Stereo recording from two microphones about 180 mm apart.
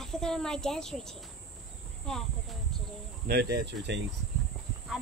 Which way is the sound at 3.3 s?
65° right (ahead or behind).